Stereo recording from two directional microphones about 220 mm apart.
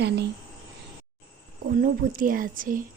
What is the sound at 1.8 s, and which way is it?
A woman's voice, 40° right (ahead or behind).